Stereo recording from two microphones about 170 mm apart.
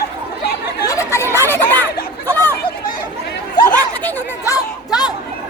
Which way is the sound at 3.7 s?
15° left (ahead or behind).